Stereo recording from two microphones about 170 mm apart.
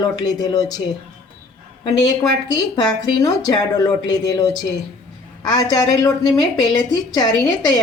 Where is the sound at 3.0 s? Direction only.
20° left (ahead or behind).